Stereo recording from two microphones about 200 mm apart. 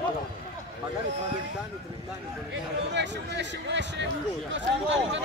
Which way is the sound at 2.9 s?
60° right (ahead or behind).